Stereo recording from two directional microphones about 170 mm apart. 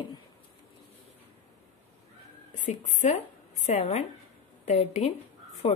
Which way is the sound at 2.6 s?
45° left (ahead or behind).